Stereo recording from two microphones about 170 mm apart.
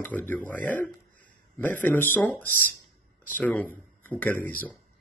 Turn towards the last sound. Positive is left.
turn(degrees=10)  # may be behind; listen again after turning